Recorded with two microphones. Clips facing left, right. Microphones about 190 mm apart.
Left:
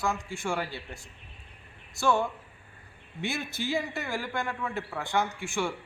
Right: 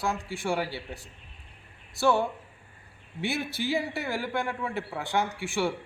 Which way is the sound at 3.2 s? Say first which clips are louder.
Right 3 dB; 15° right (ahead or behind).